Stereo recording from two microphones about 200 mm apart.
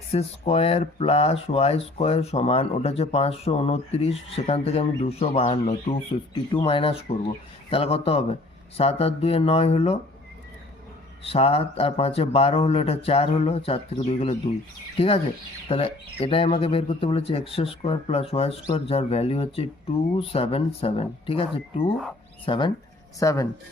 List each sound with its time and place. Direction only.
0.1 s speech: 30° left (ahead or behind)
11.2 s speech: 30° left (ahead or behind)